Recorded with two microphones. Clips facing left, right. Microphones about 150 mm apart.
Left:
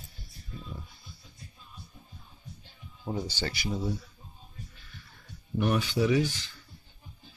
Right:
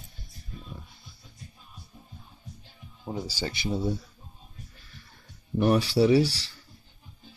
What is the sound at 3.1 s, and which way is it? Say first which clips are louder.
Speech: even; 5° right (ahead or behind).